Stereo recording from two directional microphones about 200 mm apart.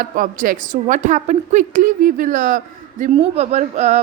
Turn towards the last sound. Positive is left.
turn(degrees=-35)  # may be behind; listen again after turning